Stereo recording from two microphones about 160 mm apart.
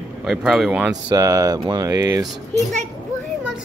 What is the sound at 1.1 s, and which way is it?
Speech, 20° right (ahead or behind).